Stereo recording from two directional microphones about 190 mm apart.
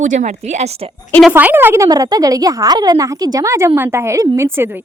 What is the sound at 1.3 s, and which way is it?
A woman's voice, 10° right (ahead or behind).